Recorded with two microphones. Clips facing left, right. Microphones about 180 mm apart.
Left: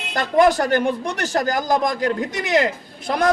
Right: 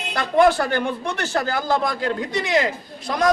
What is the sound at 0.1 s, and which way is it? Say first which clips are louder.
Speech: left 1 dB; 40° left (ahead or behind).